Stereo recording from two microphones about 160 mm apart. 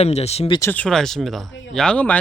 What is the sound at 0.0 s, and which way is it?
Speech, 40° left (ahead or behind).